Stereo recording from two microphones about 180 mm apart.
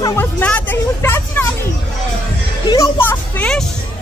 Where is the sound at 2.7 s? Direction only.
15° left (ahead or behind).